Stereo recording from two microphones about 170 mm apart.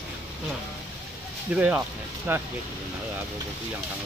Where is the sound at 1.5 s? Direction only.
10° right (ahead or behind).